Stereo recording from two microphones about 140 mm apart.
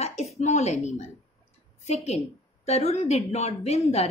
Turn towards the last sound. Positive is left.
turn(degrees=45)  # may be behind; listen again after turning